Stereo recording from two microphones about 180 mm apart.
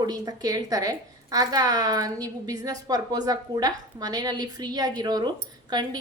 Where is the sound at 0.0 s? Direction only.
20° right (ahead or behind).